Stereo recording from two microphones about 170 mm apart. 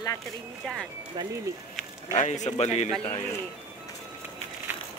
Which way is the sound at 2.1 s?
45° left (ahead or behind).